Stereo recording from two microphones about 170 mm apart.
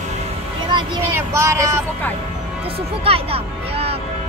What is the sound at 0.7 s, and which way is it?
Speech, 25° right (ahead or behind).